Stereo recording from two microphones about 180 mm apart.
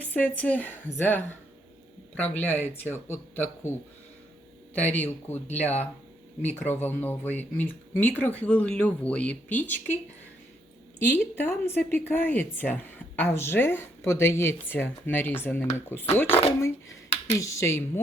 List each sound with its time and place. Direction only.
0.0 s a woman's voice: 10° left (ahead or behind)
2.4 s speech: 10° left (ahead or behind)
11.1 s speech: 15° left (ahead or behind)